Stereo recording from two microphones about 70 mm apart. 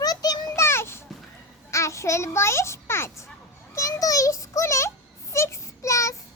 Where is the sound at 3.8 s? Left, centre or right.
Left.